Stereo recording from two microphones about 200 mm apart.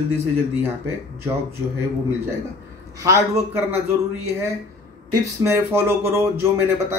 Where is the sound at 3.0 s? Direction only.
15° right (ahead or behind).